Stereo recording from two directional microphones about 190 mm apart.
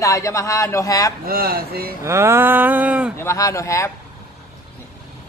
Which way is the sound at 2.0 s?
15° right (ahead or behind).